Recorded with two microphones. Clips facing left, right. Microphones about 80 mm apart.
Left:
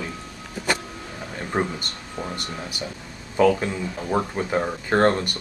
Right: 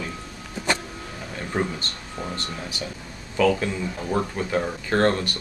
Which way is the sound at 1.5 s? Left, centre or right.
Left.